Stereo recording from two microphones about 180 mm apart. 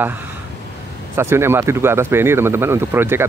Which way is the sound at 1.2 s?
15° right (ahead or behind).